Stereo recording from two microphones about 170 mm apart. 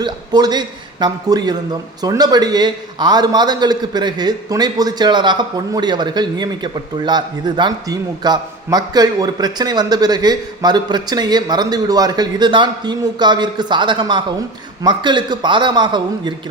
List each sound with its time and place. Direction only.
0.0 s a man's voice: 25° right (ahead or behind)